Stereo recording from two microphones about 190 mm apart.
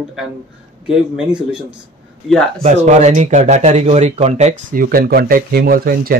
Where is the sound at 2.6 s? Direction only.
40° right (ahead or behind).